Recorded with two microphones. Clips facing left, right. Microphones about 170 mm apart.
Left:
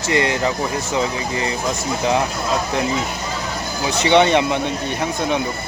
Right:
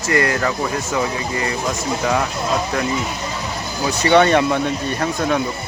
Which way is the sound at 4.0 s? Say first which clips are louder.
Right 1 dB; 20° left (ahead or behind).